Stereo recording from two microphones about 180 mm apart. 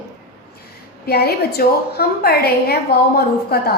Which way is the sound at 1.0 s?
60° left (ahead or behind).